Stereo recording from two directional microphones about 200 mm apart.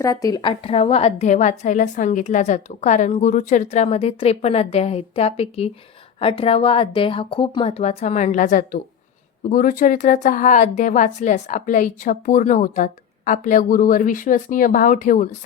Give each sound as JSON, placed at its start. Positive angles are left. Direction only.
{"t": 0.0, "sound": "speech", "side_deg": 15}